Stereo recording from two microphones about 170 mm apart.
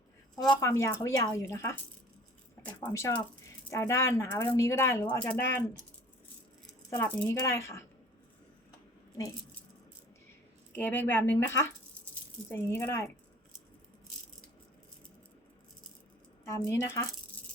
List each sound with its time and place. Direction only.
0.4 s speech: 15° left (ahead or behind)
2.8 s speech: 15° left (ahead or behind)
6.9 s speech: 10° left (ahead or behind)
10.8 s speech: 10° left (ahead or behind)
16.5 s speech: 15° left (ahead or behind)